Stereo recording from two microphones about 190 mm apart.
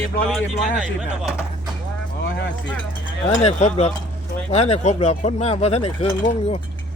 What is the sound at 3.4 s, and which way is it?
Speech, 35° left (ahead or behind).